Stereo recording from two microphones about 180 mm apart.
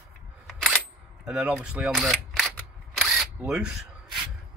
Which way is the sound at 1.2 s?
5° right (ahead or behind).